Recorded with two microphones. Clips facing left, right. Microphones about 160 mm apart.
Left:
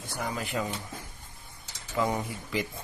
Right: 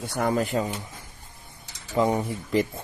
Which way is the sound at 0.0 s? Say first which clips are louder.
Right 9 dB; 65° right (ahead or behind).